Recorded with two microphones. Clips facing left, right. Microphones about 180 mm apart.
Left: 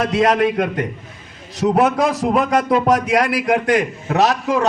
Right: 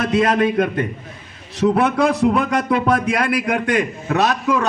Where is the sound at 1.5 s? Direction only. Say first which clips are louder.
Left 1 dB; 40° left (ahead or behind).